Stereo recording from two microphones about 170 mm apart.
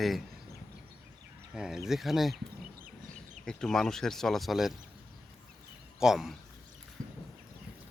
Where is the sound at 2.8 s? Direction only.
55° right (ahead or behind).